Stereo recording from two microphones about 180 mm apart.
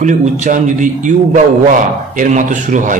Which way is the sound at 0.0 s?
40° right (ahead or behind).